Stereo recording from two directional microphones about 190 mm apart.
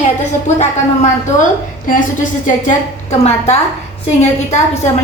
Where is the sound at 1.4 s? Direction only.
45° left (ahead or behind).